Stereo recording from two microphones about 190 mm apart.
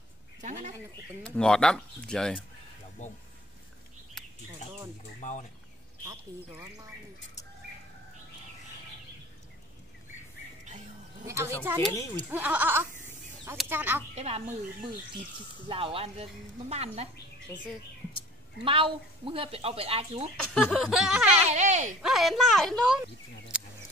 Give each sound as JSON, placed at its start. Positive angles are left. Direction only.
{"t": 0.4, "sound": "speech", "side_deg": -40}
{"t": 1.2, "sound": "speech", "side_deg": 5}
{"t": 5.2, "sound": "speech", "side_deg": 40}
{"t": 11.2, "sound": "speech", "side_deg": -15}
{"t": 11.9, "sound": "speech", "side_deg": 15}
{"t": 12.3, "sound": "speech", "side_deg": -10}
{"t": 14.1, "sound": "speech", "side_deg": -30}
{"t": 18.6, "sound": "a woman's voice", "side_deg": -30}
{"t": 20.5, "sound": "speech", "side_deg": 0}
{"t": 21.4, "sound": "speech", "side_deg": -40}
{"t": 22.0, "sound": "speech", "side_deg": 0}
{"t": 23.5, "sound": "a sound", "side_deg": -5}